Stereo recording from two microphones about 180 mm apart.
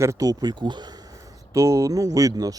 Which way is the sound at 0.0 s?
20° right (ahead or behind).